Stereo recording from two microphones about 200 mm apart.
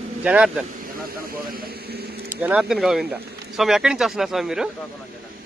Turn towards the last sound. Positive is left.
turn(degrees=0)  # may be behind; listen again after turning